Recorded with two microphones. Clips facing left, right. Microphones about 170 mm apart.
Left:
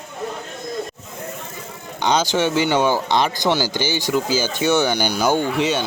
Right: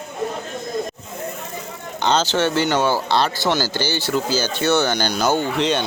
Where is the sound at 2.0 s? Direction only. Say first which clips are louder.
Even; 10° left (ahead or behind).